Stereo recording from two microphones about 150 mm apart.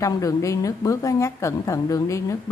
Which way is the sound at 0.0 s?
20° left (ahead or behind).